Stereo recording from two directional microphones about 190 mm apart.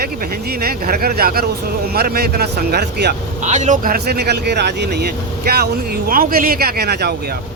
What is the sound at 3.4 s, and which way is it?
Speech, 40° right (ahead or behind).